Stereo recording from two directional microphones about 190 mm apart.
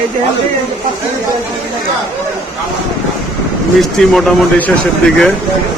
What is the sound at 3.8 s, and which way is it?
Speech, centre (ahead or behind).